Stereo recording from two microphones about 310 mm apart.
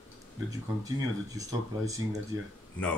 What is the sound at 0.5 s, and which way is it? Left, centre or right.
Speech, centre.